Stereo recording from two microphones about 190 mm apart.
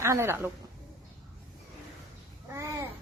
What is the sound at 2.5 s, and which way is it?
Babbling, 15° right (ahead or behind).